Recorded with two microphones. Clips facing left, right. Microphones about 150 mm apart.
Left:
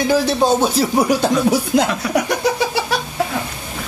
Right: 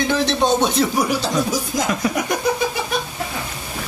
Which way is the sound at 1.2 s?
65° left (ahead or behind).